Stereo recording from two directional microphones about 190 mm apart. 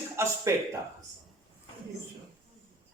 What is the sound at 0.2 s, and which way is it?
Speech, 15° right (ahead or behind).